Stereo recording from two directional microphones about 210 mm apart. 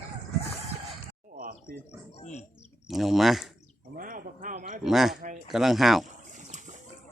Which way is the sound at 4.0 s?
40° right (ahead or behind).